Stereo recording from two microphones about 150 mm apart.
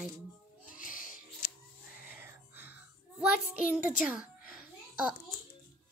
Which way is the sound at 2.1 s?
15° right (ahead or behind).